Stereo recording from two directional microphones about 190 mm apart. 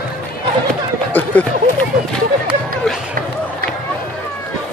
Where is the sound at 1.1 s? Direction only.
10° left (ahead or behind).